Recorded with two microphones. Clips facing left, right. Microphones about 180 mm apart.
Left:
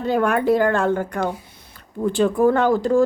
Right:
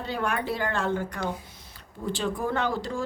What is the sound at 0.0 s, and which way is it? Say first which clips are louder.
A woman's voice: left 10 dB; 50° left (ahead or behind).